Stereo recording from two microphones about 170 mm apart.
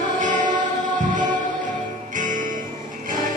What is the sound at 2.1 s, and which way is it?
Music, 50° right (ahead or behind).